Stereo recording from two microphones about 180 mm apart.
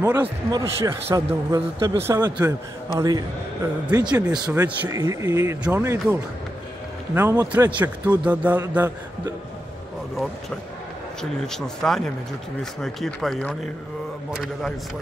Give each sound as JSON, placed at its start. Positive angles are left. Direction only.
{"t": 0.0, "sound": "a man's voice", "side_deg": -20}
{"t": 4.0, "sound": "speech", "side_deg": -5}
{"t": 4.5, "sound": "a man's voice", "side_deg": -20}
{"t": 7.2, "sound": "a man's voice", "side_deg": -15}
{"t": 11.4, "sound": "speech", "side_deg": 5}